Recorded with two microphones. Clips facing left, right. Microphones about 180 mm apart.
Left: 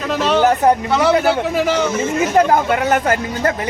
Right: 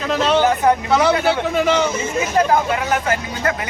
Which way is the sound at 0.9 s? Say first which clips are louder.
Left 1 dB; centre (ahead or behind).